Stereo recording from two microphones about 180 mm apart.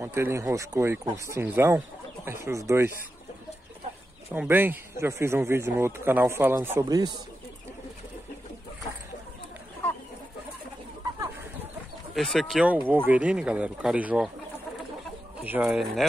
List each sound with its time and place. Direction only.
0.0 s speech: 15° right (ahead or behind)
4.3 s speech: 10° right (ahead or behind)
12.1 s speech: centre (ahead or behind)
15.4 s speech: 10° right (ahead or behind)